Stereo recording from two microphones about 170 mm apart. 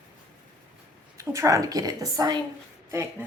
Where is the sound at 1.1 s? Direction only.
20° right (ahead or behind).